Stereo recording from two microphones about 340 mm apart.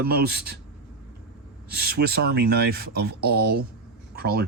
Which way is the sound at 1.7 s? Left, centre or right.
Right.